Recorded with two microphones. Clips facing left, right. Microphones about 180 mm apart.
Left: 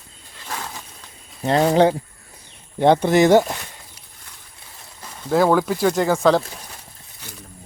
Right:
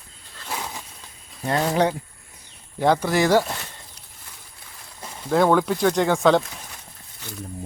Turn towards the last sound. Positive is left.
turn(degrees=0)  # may be behind; listen again after turning